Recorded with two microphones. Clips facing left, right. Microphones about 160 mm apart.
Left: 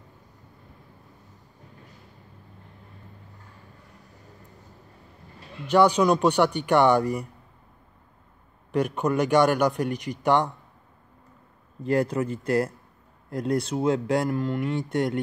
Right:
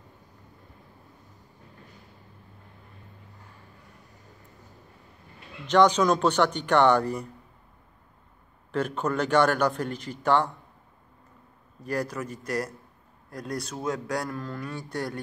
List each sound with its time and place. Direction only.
5.7 s speech: 10° left (ahead or behind)
8.7 s speech: 15° left (ahead or behind)
11.8 s speech: 25° left (ahead or behind)